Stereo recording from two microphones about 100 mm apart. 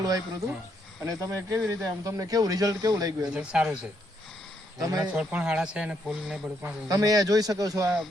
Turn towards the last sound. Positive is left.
turn(degrees=-35)  # may be behind; listen again after turning